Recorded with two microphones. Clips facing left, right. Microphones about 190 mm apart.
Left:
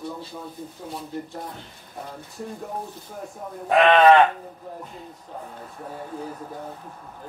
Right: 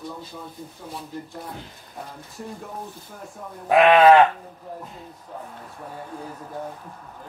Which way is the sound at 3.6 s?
5° right (ahead or behind).